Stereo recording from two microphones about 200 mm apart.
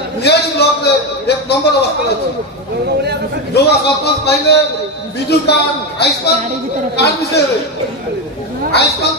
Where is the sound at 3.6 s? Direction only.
55° left (ahead or behind).